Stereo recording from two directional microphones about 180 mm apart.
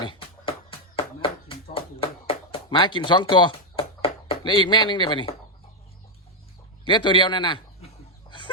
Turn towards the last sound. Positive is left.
turn(degrees=25)  # may be behind; listen again after turning